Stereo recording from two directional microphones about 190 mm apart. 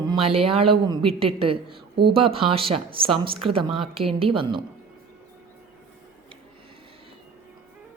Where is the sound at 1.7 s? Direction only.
60° right (ahead or behind).